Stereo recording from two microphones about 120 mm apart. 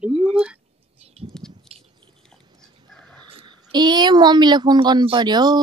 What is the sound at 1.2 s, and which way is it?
Speech, 40° right (ahead or behind).